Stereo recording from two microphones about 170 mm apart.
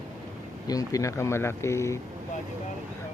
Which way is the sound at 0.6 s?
20° left (ahead or behind).